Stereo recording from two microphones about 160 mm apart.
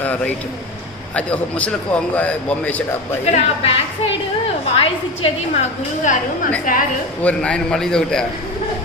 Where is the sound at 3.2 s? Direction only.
40° left (ahead or behind).